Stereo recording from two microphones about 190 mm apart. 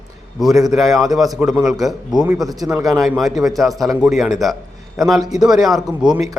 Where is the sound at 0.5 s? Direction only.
20° right (ahead or behind).